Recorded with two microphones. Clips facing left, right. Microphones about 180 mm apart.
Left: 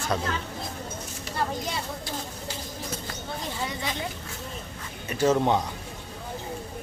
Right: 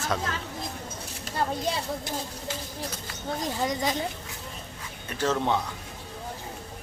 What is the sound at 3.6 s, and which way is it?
Speech, 40° right (ahead or behind).